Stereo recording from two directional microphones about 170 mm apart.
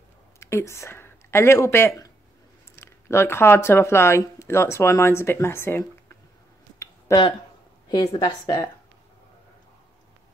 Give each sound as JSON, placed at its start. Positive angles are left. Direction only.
{"t": 0.4, "sound": "speech", "side_deg": 15}
{"t": 6.8, "sound": "a sound", "side_deg": 20}
{"t": 7.9, "sound": "a woman's voice", "side_deg": 25}